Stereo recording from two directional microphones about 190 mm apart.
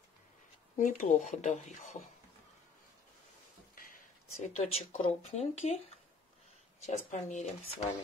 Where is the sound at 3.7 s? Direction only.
50° left (ahead or behind).